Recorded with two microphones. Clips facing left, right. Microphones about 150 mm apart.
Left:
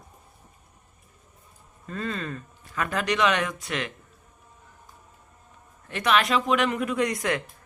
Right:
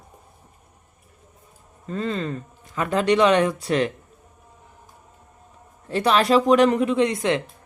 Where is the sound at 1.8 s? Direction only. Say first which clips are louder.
Right 5 dB; 25° right (ahead or behind).